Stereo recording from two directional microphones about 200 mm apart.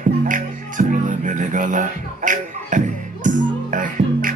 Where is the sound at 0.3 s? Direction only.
40° right (ahead or behind).